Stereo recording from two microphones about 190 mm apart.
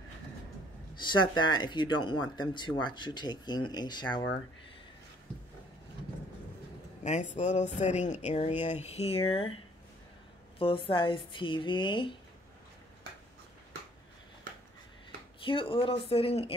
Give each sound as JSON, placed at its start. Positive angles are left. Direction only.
{"t": 0.9, "sound": "speech", "side_deg": 25}
{"t": 7.0, "sound": "speech", "side_deg": 40}
{"t": 10.6, "sound": "speech", "side_deg": 30}
{"t": 15.4, "sound": "speech", "side_deg": 30}